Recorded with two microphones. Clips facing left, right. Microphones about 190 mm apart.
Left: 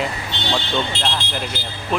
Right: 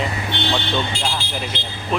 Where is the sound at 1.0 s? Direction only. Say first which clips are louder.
Left 1 dB; centre (ahead or behind).